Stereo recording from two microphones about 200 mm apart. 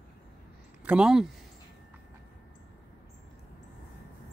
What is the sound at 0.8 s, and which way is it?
Speech, 5° right (ahead or behind).